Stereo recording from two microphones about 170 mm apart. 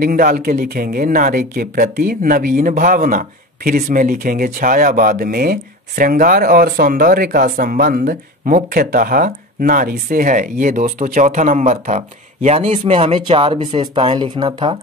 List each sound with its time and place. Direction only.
0.0 s speech: 55° right (ahead or behind); by 14.8 s 25° right (ahead or behind)